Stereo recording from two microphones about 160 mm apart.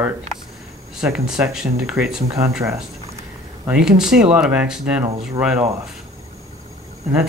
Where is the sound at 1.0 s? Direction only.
5° right (ahead or behind).